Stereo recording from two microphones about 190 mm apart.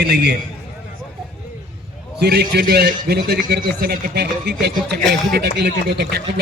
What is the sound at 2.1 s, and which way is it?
A man's voice, 55° right (ahead or behind).